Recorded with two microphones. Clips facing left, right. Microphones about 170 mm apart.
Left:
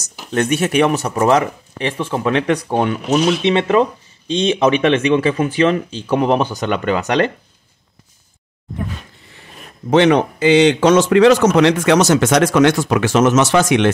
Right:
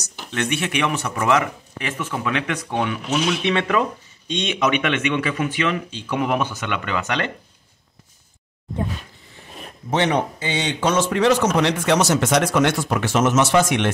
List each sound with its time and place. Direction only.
0.3 s speech: 40° left (ahead or behind)
3.5 s speech: 25° left (ahead or behind); by 7.2 s 40° left (ahead or behind)
9.8 s speech: 90° left